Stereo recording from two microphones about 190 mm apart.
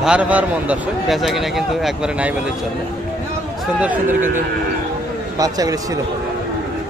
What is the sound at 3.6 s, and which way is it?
Speech, 5° right (ahead or behind).